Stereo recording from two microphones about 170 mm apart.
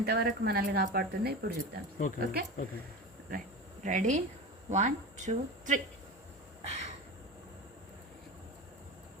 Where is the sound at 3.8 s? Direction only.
45° right (ahead or behind).